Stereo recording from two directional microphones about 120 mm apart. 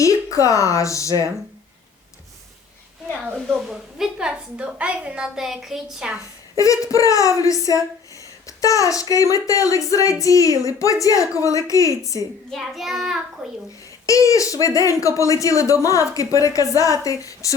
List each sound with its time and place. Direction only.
0.0 s speech: 25° left (ahead or behind)
3.3 s a woman's voice: 5° right (ahead or behind)
6.6 s speech: 25° left (ahead or behind)
12.5 s child singing: centre (ahead or behind)
14.1 s speech: 25° left (ahead or behind)